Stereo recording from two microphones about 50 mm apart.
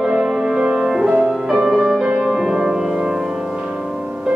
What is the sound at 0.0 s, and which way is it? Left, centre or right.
Music, centre.